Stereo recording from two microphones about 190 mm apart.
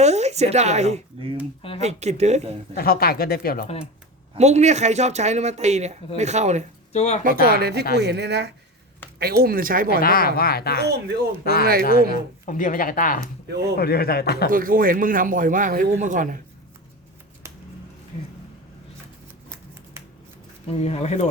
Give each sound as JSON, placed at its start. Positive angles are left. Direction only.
{"t": 0.0, "sound": "speech", "side_deg": -35}
{"t": 2.7, "sound": "speech", "side_deg": 50}
{"t": 4.4, "sound": "speech", "side_deg": -35}
{"t": 6.9, "sound": "speech", "side_deg": 35}
{"t": 7.4, "sound": "a man's voice", "side_deg": -55}
{"t": 9.9, "sound": "speech", "side_deg": 50}
{"t": 10.8, "sound": "speech", "side_deg": -60}
{"t": 12.1, "sound": "a man's voice", "side_deg": 45}
{"t": 14.5, "sound": "a man's voice", "side_deg": -45}
{"t": 20.7, "sound": "speech", "side_deg": 35}